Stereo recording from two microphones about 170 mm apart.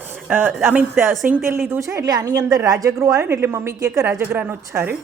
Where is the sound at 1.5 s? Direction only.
10° right (ahead or behind).